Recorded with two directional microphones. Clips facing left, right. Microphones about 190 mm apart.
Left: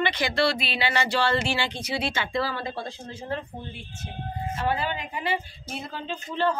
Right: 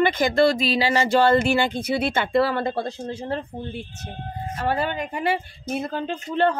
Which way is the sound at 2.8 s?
40° right (ahead or behind).